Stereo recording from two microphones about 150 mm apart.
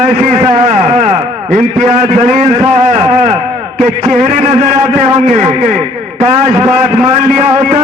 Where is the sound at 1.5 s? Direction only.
50° right (ahead or behind).